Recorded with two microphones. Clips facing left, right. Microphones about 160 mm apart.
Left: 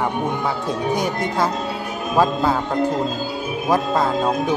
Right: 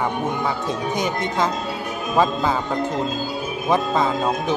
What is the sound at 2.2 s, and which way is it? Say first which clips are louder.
Speech: left 2 dB; 5° left (ahead or behind).